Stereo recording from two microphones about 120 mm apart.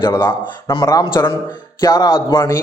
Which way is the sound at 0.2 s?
40° left (ahead or behind).